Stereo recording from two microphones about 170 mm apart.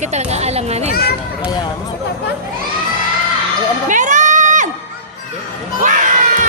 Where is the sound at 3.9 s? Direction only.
50° right (ahead or behind).